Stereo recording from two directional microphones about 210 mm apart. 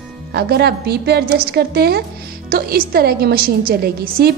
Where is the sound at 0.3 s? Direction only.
50° right (ahead or behind).